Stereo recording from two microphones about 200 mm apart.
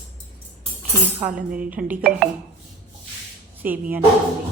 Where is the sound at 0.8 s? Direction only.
5° right (ahead or behind).